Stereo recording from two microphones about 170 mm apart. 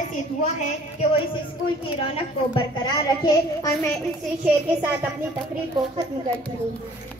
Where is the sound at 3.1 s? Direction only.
20° left (ahead or behind).